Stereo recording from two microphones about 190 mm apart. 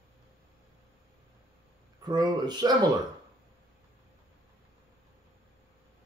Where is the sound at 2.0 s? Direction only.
20° right (ahead or behind).